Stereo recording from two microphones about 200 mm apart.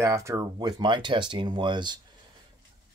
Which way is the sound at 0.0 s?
15° right (ahead or behind).